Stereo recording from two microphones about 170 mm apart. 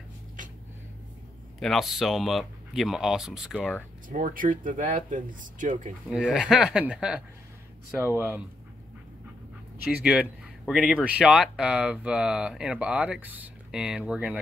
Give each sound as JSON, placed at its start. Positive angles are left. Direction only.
{"t": 1.6, "sound": "speech", "side_deg": 0}
{"t": 4.1, "sound": "speech", "side_deg": -55}
{"t": 6.0, "sound": "speech", "side_deg": -5}
{"t": 9.8, "sound": "speech", "side_deg": -5}